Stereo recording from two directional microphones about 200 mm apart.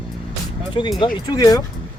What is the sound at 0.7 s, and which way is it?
Speech, 25° left (ahead or behind).